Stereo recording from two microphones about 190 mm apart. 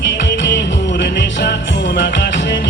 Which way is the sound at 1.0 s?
65° left (ahead or behind).